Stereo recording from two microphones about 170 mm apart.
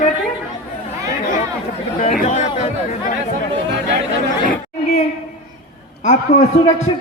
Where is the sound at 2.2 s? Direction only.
40° left (ahead or behind).